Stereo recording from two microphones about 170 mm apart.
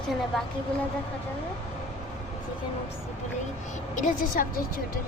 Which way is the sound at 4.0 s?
50° left (ahead or behind).